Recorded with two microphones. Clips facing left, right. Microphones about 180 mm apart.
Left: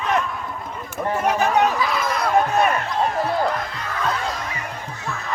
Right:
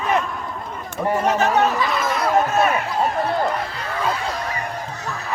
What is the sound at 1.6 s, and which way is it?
Chatter, centre (ahead or behind).